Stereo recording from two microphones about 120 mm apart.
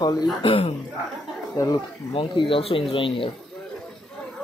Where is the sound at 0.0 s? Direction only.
35° left (ahead or behind).